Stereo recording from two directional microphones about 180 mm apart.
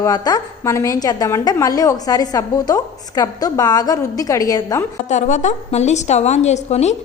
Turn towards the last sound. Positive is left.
turn(degrees=40)  # may be behind; listen again after turning